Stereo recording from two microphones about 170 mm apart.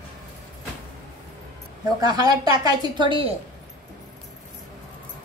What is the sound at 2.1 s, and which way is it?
A woman's voice, 25° right (ahead or behind).